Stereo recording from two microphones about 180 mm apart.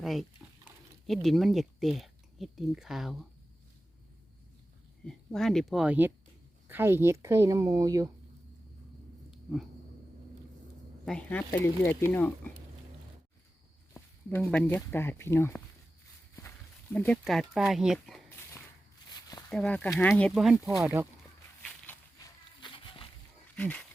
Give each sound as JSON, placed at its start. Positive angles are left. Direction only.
{"t": 0.0, "sound": "speech", "side_deg": 0}
{"t": 5.0, "sound": "a woman's voice", "side_deg": 0}
{"t": 9.3, "sound": "a sound", "side_deg": 0}
{"t": 11.0, "sound": "speech", "side_deg": 5}
{"t": 13.9, "sound": "speech", "side_deg": 10}
{"t": 16.9, "sound": "speech", "side_deg": 10}
{"t": 19.5, "sound": "speech", "side_deg": 5}
{"t": 20.3, "sound": "speech", "side_deg": -5}
{"t": 20.7, "sound": "a woman's voice", "side_deg": -15}
{"t": 21.6, "sound": "a sound", "side_deg": 5}
{"t": 22.6, "sound": "a sound", "side_deg": 25}
{"t": 23.6, "sound": "speech", "side_deg": 5}